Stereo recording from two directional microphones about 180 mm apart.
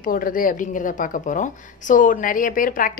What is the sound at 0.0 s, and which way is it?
Speech, 50° left (ahead or behind).